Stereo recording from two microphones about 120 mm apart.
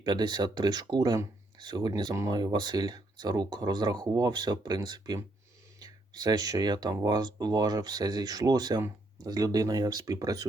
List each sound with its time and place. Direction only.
0.0 s speech: 35° right (ahead or behind)